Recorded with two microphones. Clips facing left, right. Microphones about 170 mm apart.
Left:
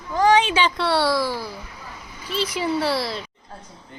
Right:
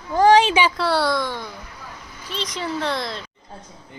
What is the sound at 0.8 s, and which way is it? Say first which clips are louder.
A woman's voice: even; centre (ahead or behind).